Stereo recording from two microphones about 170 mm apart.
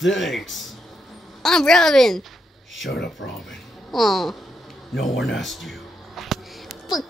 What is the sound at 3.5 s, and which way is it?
Speech, centre (ahead or behind).